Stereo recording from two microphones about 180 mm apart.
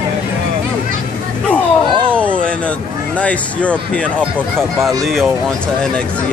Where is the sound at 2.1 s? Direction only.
5° left (ahead or behind).